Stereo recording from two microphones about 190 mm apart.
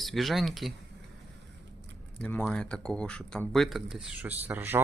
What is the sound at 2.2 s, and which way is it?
Speech, 5° left (ahead or behind).